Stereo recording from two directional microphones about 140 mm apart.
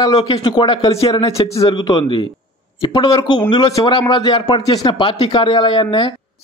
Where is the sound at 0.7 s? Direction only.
45° left (ahead or behind).